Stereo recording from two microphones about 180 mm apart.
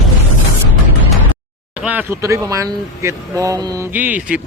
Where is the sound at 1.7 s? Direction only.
10° right (ahead or behind).